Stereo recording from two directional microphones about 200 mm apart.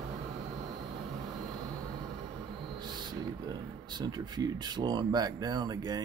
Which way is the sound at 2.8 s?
20° right (ahead or behind).